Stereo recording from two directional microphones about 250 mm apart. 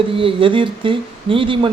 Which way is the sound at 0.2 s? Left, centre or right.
Right.